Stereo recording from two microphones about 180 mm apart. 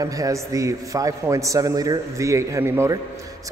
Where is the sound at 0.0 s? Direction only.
20° right (ahead or behind).